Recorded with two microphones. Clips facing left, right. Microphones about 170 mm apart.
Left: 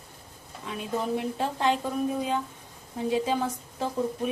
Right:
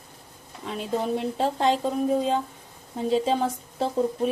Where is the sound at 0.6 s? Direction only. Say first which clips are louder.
Right 3 dB; 30° right (ahead or behind).